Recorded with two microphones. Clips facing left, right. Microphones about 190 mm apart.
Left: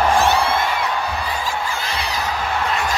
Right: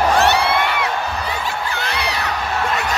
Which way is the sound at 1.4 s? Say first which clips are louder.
Even; 65° right (ahead or behind).